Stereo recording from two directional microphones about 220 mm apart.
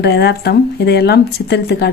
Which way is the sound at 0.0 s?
50° left (ahead or behind).